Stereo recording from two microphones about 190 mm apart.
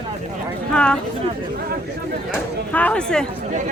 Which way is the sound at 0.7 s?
5° left (ahead or behind).